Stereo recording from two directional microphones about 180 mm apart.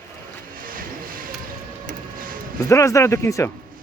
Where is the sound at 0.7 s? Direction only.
50° right (ahead or behind).